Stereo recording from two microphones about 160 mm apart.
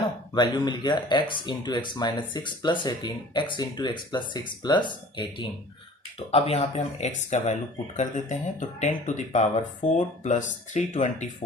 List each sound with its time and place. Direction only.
0.3 s speech: 25° left (ahead or behind)
6.3 s speech: 40° left (ahead or behind)